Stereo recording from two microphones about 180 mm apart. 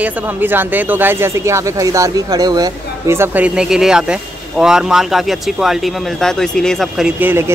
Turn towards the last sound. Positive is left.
turn(degrees=-10)  # may be behind; listen again after turning